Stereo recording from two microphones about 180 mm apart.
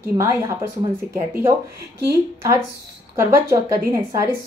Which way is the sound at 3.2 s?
15° right (ahead or behind).